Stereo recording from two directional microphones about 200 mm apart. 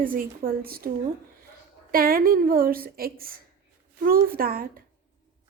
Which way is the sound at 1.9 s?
45° right (ahead or behind).